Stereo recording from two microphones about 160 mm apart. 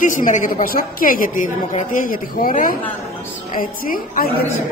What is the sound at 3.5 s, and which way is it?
Speech, 60° left (ahead or behind).